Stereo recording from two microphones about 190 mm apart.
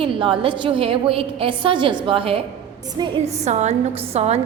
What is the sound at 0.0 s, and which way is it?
A woman's voice, 25° right (ahead or behind).